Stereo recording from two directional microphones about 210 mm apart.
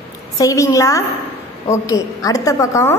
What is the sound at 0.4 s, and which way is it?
A woman's voice, 15° left (ahead or behind).